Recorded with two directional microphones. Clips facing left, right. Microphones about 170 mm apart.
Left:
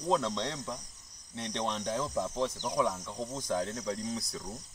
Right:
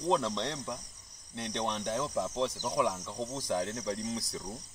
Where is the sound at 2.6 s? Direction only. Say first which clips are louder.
Even; 5° right (ahead or behind).